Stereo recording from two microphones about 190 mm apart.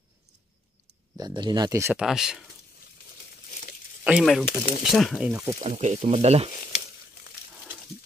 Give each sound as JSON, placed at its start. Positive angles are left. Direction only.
{"t": 1.1, "sound": "speech", "side_deg": -20}
{"t": 2.0, "sound": "speech", "side_deg": 0}
{"t": 4.0, "sound": "speech", "side_deg": -5}
{"t": 4.5, "sound": "speech", "side_deg": 50}
{"t": 4.9, "sound": "speech", "side_deg": 0}
{"t": 5.6, "sound": "speech", "side_deg": -35}